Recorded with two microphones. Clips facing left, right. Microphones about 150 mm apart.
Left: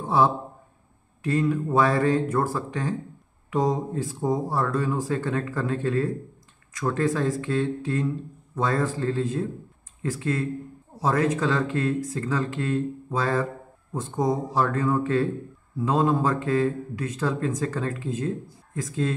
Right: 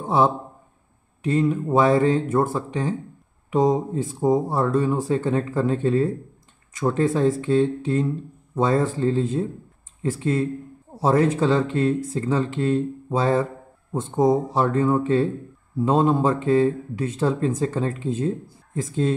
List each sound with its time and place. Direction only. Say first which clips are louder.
0.0 s speech: right 2 dB; 20° right (ahead or behind)